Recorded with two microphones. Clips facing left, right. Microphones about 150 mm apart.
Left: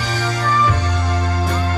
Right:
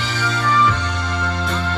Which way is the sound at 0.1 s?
35° left (ahead or behind).